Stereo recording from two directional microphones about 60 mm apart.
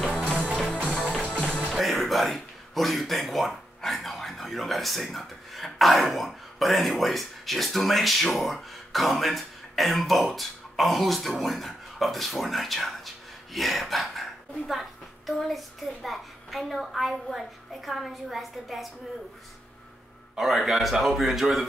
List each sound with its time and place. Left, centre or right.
0.0 s music: centre
0.8 s music: centre
1.7 s a child's voice: centre
20.3 s a child's voice: centre